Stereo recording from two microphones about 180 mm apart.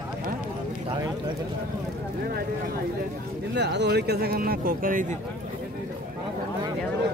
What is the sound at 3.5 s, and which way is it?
Speech, 70° right (ahead or behind).